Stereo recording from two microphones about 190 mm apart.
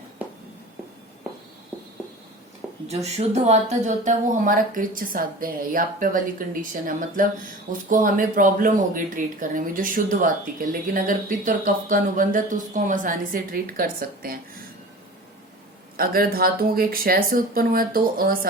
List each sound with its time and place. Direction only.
2.8 s speech: 35° right (ahead or behind)
16.0 s speech: 50° right (ahead or behind)